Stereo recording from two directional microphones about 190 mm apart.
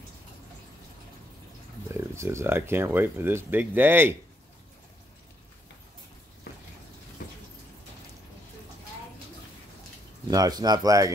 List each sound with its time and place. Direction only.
1.9 s speech: 15° right (ahead or behind)
10.3 s speech: 20° right (ahead or behind)